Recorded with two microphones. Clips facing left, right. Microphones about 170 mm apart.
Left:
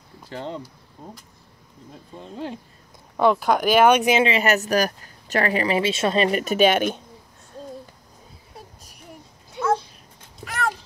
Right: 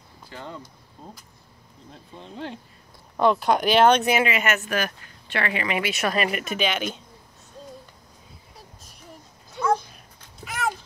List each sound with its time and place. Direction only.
0.3 s speech: 30° left (ahead or behind)
1.9 s speech: 5° left (ahead or behind); by 7.0 s 50° left (ahead or behind)
9.6 s a sound: 20° left (ahead or behind)
10.4 s cat: 5° right (ahead or behind)